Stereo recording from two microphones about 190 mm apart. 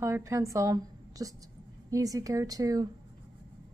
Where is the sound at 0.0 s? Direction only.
15° right (ahead or behind).